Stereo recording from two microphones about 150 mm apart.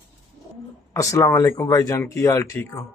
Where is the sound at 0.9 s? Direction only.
20° left (ahead or behind).